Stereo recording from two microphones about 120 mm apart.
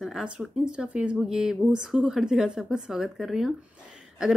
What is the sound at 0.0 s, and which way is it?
Speech, 5° right (ahead or behind).